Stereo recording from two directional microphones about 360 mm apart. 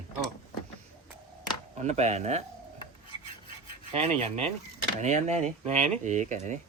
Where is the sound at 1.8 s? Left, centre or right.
Centre.